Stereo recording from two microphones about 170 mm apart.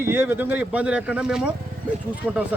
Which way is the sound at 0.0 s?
15° right (ahead or behind).